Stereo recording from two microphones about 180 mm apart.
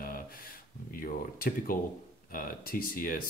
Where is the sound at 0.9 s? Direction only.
50° left (ahead or behind).